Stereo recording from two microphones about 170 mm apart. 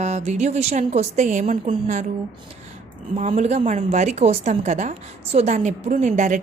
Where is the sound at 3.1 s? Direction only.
40° right (ahead or behind).